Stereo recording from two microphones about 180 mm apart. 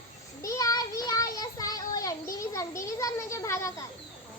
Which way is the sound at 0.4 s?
20° left (ahead or behind).